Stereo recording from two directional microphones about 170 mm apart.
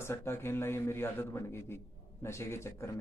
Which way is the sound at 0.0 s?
15° left (ahead or behind).